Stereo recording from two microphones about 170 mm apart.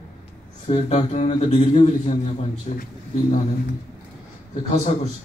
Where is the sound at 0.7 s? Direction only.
40° left (ahead or behind).